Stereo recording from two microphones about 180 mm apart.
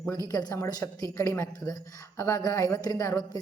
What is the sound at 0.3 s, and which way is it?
A woman's voice, 20° left (ahead or behind).